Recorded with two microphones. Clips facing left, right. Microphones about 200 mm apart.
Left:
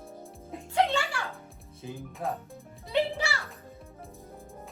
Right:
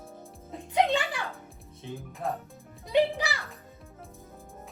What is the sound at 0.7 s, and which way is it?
Music, 15° right (ahead or behind).